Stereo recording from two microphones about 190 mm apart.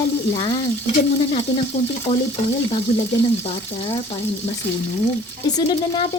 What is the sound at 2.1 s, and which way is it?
Speech, 25° left (ahead or behind).